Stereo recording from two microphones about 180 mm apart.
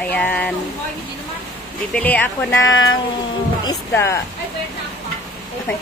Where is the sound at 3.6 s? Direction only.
15° left (ahead or behind).